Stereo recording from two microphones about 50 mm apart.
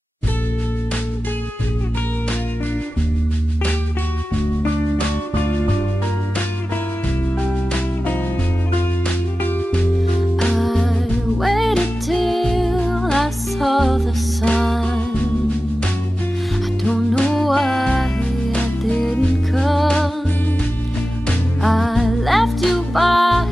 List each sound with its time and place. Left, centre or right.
10.5 s music: centre
14.9 s music: left
16.9 s music: centre
19.5 s music: centre
21.6 s music: centre